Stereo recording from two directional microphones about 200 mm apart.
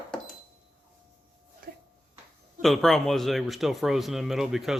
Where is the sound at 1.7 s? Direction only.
50° right (ahead or behind).